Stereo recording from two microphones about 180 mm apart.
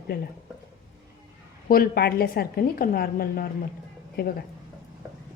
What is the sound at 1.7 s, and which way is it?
A woman's voice, 60° left (ahead or behind).